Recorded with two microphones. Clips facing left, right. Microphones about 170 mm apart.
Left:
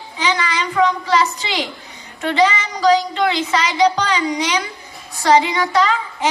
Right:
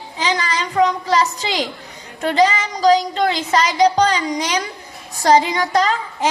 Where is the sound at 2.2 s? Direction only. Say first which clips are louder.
Right 1 dB; 40° right (ahead or behind).